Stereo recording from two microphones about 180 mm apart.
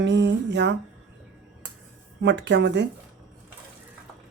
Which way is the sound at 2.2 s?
75° right (ahead or behind).